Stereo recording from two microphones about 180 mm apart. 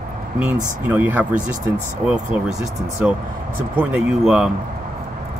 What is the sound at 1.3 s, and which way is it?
Speech, 45° right (ahead or behind).